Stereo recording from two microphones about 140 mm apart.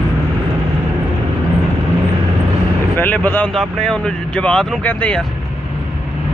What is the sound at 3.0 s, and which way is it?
Vehicle, 10° left (ahead or behind).